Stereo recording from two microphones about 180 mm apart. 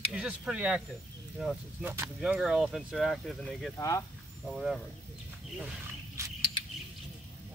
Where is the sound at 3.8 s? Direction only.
15° left (ahead or behind).